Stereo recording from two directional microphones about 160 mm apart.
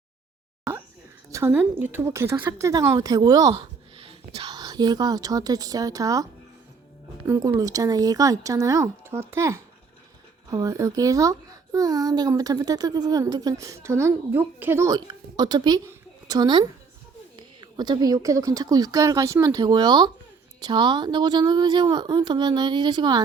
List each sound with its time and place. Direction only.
1.3 s a child's voice: 15° right (ahead or behind)
7.3 s a child's voice: 20° right (ahead or behind)
15.9 s a sound: 25° right (ahead or behind)
17.3 s a child's voice: 25° right (ahead or behind)